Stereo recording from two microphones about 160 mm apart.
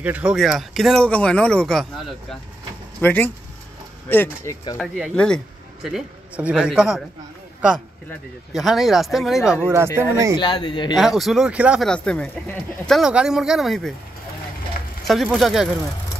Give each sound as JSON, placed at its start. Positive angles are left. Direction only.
{"t": 0.0, "sound": "speech", "side_deg": -10}
{"t": 4.7, "sound": "speech", "side_deg": -5}
{"t": 5.9, "sound": "speech", "side_deg": -5}
{"t": 8.5, "sound": "speech", "side_deg": 0}
{"t": 9.9, "sound": "speech", "side_deg": -20}
{"t": 10.3, "sound": "speech", "side_deg": 25}
{"t": 11.0, "sound": "speech", "side_deg": 0}
{"t": 11.9, "sound": "speech", "side_deg": 5}
{"t": 15.3, "sound": "speech", "side_deg": 0}